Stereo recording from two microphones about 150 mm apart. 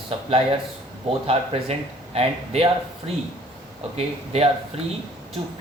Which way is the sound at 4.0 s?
45° right (ahead or behind).